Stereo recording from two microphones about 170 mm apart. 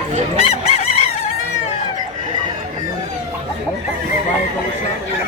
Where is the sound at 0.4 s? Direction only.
40° left (ahead or behind).